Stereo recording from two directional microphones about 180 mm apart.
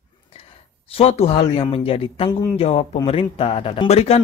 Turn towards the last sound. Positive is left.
turn(degrees=35)  # may be behind; listen again after turning